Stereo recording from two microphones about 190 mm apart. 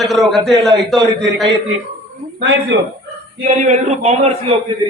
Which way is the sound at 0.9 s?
20° right (ahead or behind).